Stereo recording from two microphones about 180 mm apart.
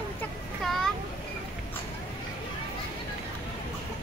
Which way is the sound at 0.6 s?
Centre (ahead or behind).